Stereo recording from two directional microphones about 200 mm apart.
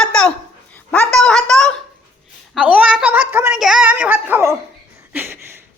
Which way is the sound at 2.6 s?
5° right (ahead or behind).